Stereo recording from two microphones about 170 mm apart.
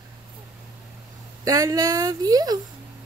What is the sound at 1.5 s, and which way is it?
Speech, 20° right (ahead or behind).